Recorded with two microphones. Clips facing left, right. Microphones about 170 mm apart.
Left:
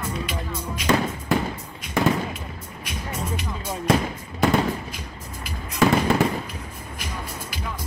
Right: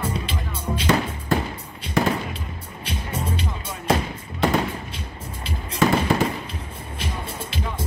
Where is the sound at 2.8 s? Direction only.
30° right (ahead or behind).